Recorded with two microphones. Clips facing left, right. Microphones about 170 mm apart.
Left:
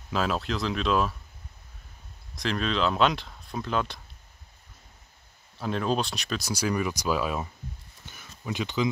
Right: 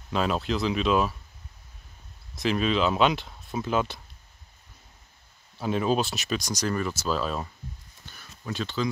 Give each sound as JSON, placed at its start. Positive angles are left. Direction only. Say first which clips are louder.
{"t": 0.1, "sound": "speech", "louder": "right 2 dB", "side_deg": 0}
{"t": 2.3, "sound": "speech", "louder": "right 3 dB", "side_deg": -5}
{"t": 5.6, "sound": "speech", "louder": "right 2 dB", "side_deg": -5}
{"t": 8.1, "sound": "a sound", "louder": "left 1 dB", "side_deg": 15}